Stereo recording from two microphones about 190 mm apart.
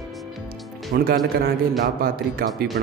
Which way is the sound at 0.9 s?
50° right (ahead or behind).